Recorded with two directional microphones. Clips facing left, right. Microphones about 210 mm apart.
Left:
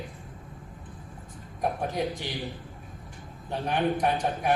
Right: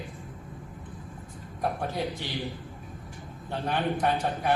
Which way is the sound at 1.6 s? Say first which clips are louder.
Left 1 dB; 15° left (ahead or behind).